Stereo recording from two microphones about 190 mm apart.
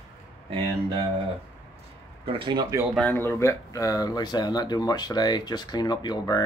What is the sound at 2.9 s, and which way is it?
Speech, 10° left (ahead or behind).